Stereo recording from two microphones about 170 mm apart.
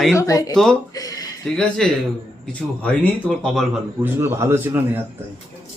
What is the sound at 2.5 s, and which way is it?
A man's voice, 5° left (ahead or behind).